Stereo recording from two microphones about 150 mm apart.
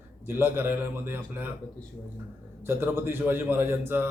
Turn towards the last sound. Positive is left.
turn(degrees=-15)  # may be behind; listen again after turning